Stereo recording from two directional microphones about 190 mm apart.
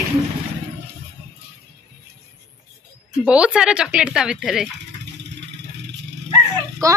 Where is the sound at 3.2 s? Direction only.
5° right (ahead or behind).